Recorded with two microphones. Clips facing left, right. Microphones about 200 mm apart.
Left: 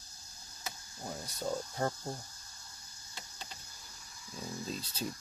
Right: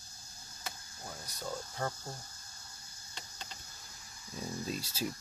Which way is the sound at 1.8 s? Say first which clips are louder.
Left 4 dB; 25° left (ahead or behind).